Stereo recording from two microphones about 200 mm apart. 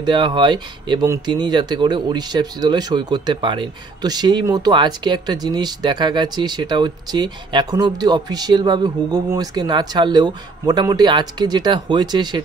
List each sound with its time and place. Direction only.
0.0 s speech: 25° right (ahead or behind)